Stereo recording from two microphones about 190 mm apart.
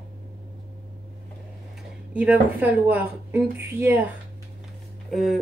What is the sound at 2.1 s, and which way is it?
Speech, 10° right (ahead or behind).